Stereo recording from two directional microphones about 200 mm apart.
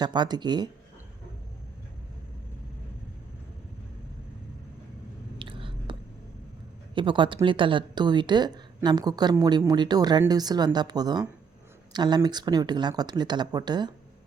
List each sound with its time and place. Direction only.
0.0 s a woman's voice: 20° right (ahead or behind)
5.4 s whispering: 25° right (ahead or behind)
6.9 s a woman's voice: 25° right (ahead or behind)